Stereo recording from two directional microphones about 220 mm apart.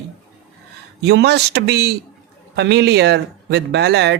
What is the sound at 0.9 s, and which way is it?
Speech, 50° right (ahead or behind).